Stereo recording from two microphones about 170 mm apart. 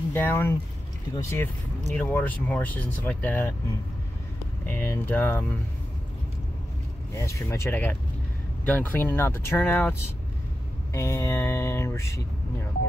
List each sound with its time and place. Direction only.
0.1 s speech: 10° left (ahead or behind)
4.6 s speech: 15° left (ahead or behind)
7.2 s speech: 15° left (ahead or behind)